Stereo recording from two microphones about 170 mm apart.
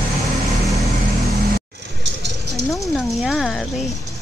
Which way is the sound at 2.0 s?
85° right.